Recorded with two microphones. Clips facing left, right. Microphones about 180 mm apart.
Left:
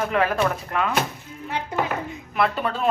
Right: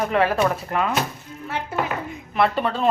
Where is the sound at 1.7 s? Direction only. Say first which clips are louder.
Even; 15° left (ahead or behind).